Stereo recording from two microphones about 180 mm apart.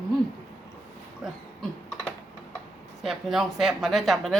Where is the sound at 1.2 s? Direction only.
Centre (ahead or behind).